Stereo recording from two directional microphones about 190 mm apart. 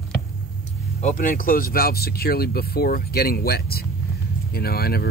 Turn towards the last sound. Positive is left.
turn(degrees=55)  # may be behind; listen again after turning